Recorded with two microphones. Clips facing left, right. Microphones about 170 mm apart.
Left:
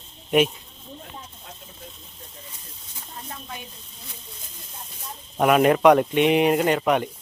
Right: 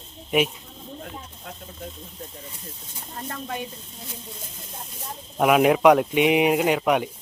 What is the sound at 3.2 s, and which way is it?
Speech, 60° right (ahead or behind).